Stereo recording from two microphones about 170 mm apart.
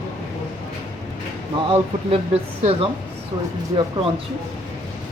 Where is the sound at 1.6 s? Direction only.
35° right (ahead or behind).